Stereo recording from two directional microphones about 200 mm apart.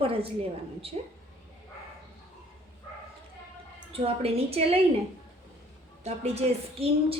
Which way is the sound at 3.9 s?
30° right (ahead or behind).